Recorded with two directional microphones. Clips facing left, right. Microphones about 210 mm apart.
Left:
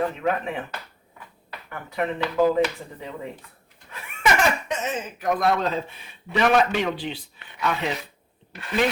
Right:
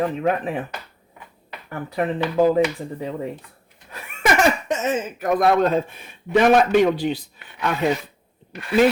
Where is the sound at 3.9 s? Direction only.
45° right (ahead or behind).